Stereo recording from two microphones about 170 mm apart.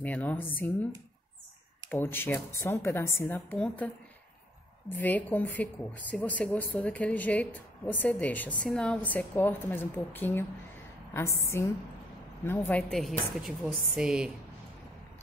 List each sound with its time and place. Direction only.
0.0 s speech: 10° left (ahead or behind)
1.9 s speech: 10° left (ahead or behind)
12.4 s a woman's voice: 10° left (ahead or behind)